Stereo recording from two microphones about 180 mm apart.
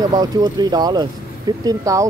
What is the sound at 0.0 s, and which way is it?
Speech, 25° right (ahead or behind).